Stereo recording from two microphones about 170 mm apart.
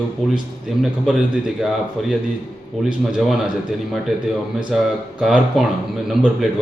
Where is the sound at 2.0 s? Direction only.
Centre (ahead or behind).